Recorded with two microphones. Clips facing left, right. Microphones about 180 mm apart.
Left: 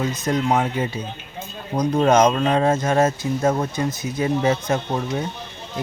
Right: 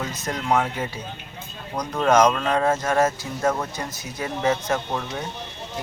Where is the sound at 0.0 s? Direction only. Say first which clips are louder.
Left 7 dB; 20° left (ahead or behind).